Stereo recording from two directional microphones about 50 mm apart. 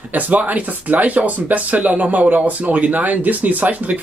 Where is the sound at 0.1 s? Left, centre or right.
Right.